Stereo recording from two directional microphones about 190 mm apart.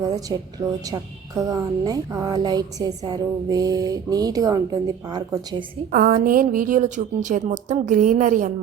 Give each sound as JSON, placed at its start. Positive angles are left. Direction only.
{"t": 0.3, "sound": "a woman's voice", "side_deg": -20}
{"t": 5.9, "sound": "a woman's voice", "side_deg": -50}